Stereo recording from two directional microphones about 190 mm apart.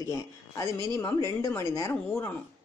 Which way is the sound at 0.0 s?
15° left (ahead or behind).